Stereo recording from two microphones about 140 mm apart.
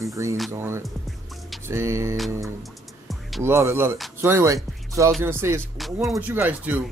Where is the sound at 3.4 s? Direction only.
20° right (ahead or behind).